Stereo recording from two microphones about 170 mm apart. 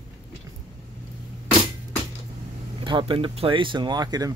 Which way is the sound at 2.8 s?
30° right (ahead or behind).